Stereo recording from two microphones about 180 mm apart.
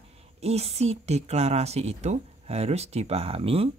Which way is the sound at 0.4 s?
35° right (ahead or behind).